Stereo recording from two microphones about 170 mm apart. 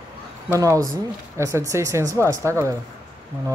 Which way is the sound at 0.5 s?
20° right (ahead or behind).